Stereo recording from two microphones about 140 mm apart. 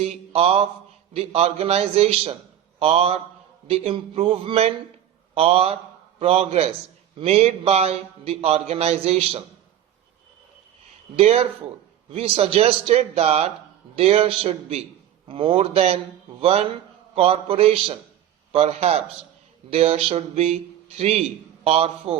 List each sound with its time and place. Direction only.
0.0 s a man's voice: 45° right (ahead or behind)
11.2 s a man's voice: 45° right (ahead or behind)